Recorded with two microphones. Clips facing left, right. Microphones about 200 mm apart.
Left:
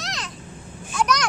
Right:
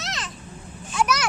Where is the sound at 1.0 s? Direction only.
5° right (ahead or behind).